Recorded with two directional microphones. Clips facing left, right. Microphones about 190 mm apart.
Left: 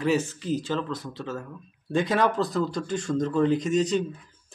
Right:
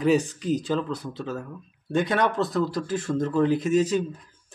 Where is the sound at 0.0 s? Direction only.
15° right (ahead or behind).